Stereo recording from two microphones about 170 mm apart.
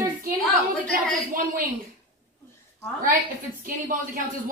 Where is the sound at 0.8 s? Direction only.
55° right (ahead or behind).